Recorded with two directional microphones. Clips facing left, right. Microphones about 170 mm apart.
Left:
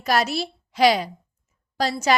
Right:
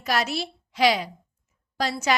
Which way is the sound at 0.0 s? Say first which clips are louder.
Left 4 dB; 40° left (ahead or behind).